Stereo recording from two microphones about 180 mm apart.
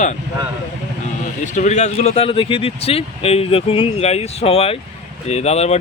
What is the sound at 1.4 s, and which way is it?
Speech, 40° left (ahead or behind).